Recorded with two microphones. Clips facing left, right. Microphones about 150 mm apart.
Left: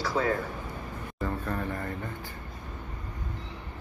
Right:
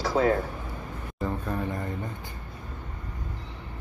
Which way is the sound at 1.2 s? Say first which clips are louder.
Right 2 dB; 15° right (ahead or behind).